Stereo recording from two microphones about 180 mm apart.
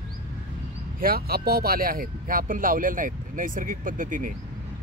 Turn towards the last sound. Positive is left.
turn(degrees=-45)  # may be behind; listen again after turning